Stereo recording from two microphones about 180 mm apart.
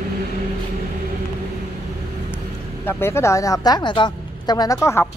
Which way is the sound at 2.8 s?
15° left (ahead or behind).